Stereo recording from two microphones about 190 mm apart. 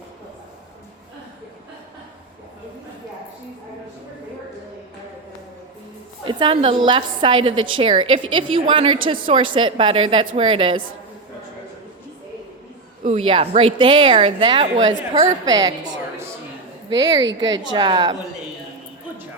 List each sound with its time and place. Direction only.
6.2 s speech: 25° right (ahead or behind)
13.1 s speech: 30° right (ahead or behind)
16.9 s speech: 20° right (ahead or behind)